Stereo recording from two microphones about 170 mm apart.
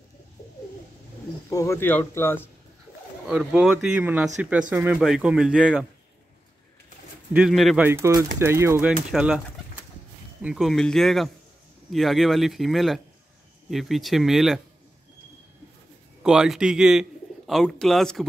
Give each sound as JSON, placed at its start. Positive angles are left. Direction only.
{"t": 1.5, "sound": "speech", "side_deg": 20}
{"t": 3.3, "sound": "speech", "side_deg": -5}
{"t": 7.3, "sound": "speech", "side_deg": 0}
{"t": 7.8, "sound": "speech", "side_deg": -15}
{"t": 9.1, "sound": "speech", "side_deg": -5}
{"t": 10.4, "sound": "speech", "side_deg": 0}
{"t": 16.2, "sound": "speech", "side_deg": -5}